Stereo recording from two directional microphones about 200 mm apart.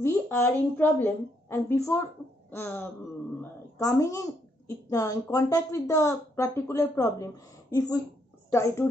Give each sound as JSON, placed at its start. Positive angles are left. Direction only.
{"t": 0.0, "sound": "a woman's voice", "side_deg": 10}